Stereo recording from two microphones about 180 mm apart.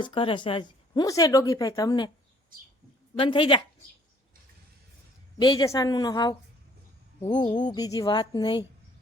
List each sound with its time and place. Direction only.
0.0 s a woman's voice: 30° left (ahead or behind)
3.2 s a woman's voice: 30° left (ahead or behind)
5.4 s a woman's voice: 25° left (ahead or behind)